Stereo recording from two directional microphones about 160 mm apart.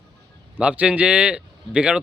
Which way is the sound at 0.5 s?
10° right (ahead or behind).